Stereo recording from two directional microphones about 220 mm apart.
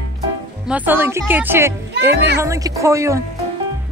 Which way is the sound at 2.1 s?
50° right (ahead or behind).